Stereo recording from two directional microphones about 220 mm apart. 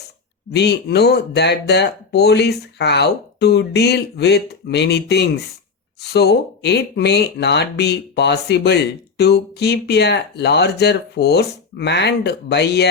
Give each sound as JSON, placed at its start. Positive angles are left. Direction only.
{"t": 0.5, "sound": "speech", "side_deg": 50}